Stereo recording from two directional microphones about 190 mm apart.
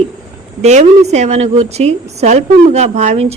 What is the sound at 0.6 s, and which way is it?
A woman's voice, 35° right (ahead or behind).